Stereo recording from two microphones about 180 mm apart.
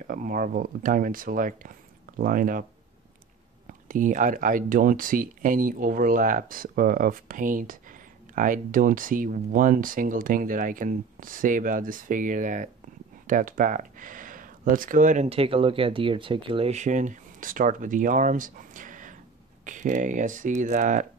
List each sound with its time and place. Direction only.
0.0 s speech: 50° right (ahead or behind)
3.9 s speech: 45° right (ahead or behind)